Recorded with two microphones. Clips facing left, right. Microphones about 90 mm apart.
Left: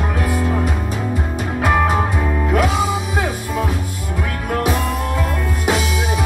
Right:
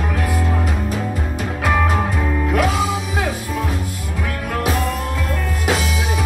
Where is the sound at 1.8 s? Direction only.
10° left (ahead or behind).